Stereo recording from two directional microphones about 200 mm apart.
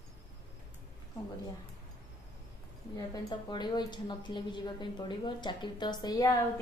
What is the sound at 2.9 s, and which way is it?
A woman's voice, 20° left (ahead or behind).